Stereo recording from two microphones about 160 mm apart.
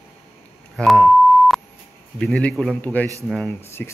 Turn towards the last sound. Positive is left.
turn(degrees=15)  # may be behind; listen again after turning